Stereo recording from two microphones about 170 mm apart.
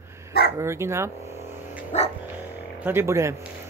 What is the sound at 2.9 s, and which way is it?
Speech, 15° right (ahead or behind).